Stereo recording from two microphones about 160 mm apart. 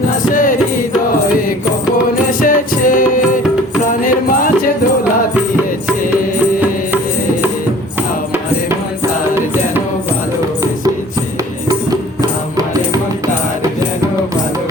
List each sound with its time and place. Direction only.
0.3 s music: 60° left (ahead or behind)
2.4 s music: 60° left (ahead or behind)